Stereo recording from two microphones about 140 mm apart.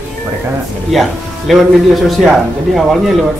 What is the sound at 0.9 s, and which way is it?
Speech, centre (ahead or behind).